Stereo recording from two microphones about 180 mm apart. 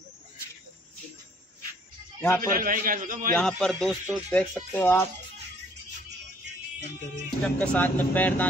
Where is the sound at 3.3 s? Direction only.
5° left (ahead or behind).